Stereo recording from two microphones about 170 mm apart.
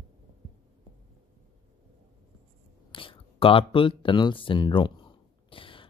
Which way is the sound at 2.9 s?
30° left (ahead or behind).